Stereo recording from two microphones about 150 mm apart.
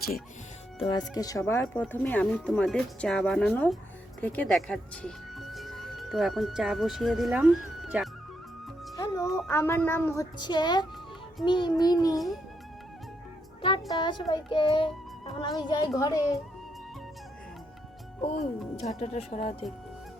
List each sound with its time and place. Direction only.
0.8 s speech: 25° left (ahead or behind); by 8.1 s 5° right (ahead or behind)
9.0 s music: 25° left (ahead or behind)
9.5 s speech: 15° left (ahead or behind)
10.3 s speech: 30° left (ahead or behind)
13.6 s music: 35° left (ahead or behind)
16.0 s speech: 25° left (ahead or behind)
18.2 s speech: 45° left (ahead or behind)